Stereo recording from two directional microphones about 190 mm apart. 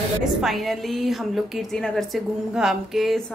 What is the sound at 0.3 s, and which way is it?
A woman's voice, centre (ahead or behind).